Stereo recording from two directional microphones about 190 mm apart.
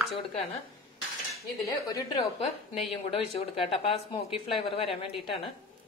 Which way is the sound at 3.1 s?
30° left (ahead or behind).